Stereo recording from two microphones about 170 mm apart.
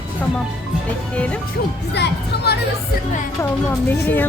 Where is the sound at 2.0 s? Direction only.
75° left (ahead or behind).